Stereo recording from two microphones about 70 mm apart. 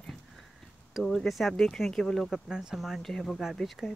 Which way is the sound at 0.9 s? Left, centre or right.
Centre.